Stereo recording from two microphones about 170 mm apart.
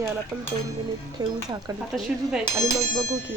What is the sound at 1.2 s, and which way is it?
Speech, 25° right (ahead or behind).